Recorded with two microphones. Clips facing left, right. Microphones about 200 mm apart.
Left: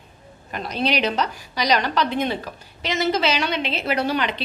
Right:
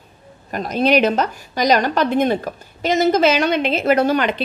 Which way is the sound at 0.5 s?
45° right (ahead or behind).